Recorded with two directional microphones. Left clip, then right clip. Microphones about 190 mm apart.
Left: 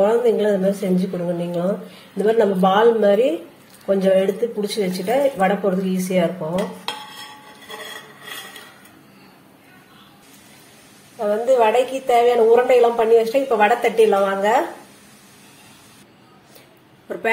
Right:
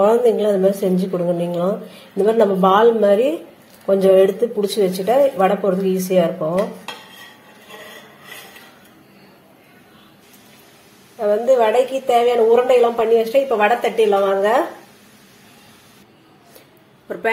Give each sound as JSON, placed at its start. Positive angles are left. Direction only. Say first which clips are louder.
{"t": 0.0, "sound": "a woman's voice", "louder": "right 2 dB", "side_deg": -20}
{"t": 11.1, "sound": "speech", "louder": "right 2 dB", "side_deg": -5}
{"t": 17.1, "sound": "a woman's voice", "louder": "right 1 dB", "side_deg": -10}